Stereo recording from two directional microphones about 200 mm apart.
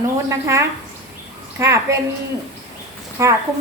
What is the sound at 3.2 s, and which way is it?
Speech, 15° right (ahead or behind).